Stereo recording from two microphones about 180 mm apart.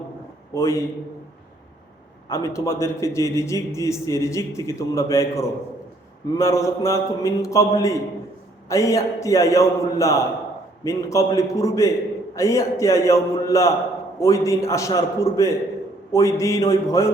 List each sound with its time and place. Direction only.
0.5 s a man's voice: 15° left (ahead or behind)
2.3 s a man's voice: 15° left (ahead or behind)